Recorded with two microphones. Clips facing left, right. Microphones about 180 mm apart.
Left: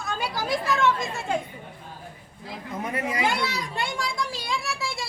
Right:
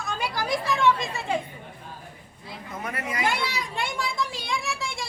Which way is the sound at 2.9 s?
25° left (ahead or behind).